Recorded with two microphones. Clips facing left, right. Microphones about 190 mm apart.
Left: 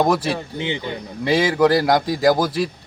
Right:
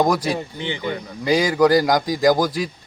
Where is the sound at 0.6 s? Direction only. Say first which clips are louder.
Even; 20° left (ahead or behind).